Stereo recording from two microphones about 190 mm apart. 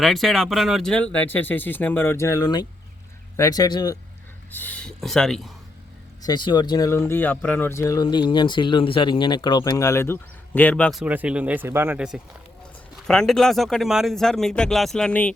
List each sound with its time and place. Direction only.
0.0 s speech: centre (ahead or behind); by 3.9 s 20° left (ahead or behind)
4.5 s speech: 10° left (ahead or behind)
6.2 s speech: 25° left (ahead or behind); by 11.0 s 5° left (ahead or behind)
11.0 s speech: 5° right (ahead or behind)